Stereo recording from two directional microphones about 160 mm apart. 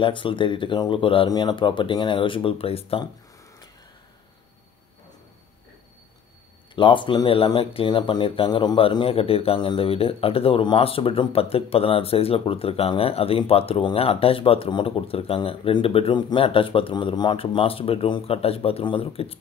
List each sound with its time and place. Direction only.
0.0 s speech: 30° left (ahead or behind)
6.7 s speech: 30° left (ahead or behind)